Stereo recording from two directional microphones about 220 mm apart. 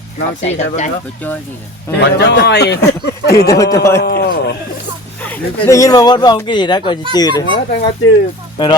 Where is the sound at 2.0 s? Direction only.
50° left (ahead or behind).